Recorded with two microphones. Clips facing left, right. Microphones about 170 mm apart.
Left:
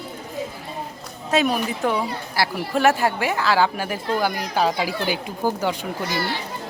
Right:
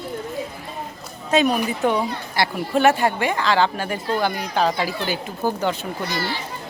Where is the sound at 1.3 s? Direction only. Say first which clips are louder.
Right 2 dB; centre (ahead or behind).